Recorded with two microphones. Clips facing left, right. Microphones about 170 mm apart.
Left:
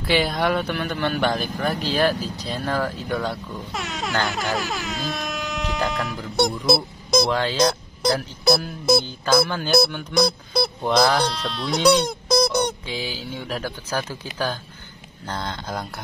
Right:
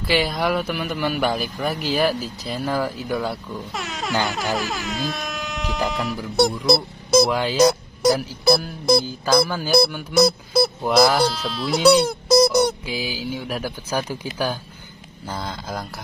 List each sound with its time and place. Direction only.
0.0 s speech: centre (ahead or behind)
15.2 s speech: 5° right (ahead or behind)